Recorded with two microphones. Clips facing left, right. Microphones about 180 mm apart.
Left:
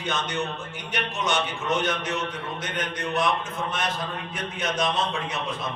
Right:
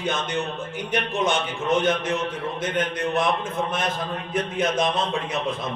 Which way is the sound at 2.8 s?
55° right (ahead or behind).